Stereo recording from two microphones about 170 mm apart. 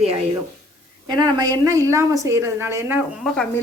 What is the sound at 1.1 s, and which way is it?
A woman's voice, 25° right (ahead or behind).